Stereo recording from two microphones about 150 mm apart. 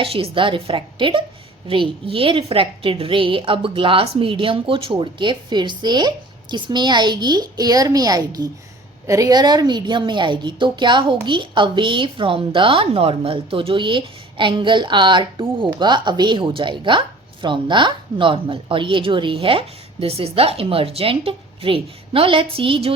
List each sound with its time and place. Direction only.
0.0 s a woman's voice: 40° right (ahead or behind)